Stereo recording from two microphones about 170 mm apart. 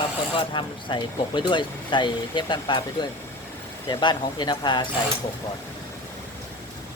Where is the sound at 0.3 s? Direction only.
30° left (ahead or behind).